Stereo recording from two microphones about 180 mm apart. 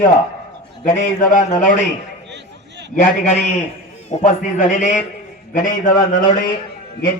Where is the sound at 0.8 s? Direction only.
45° left (ahead or behind).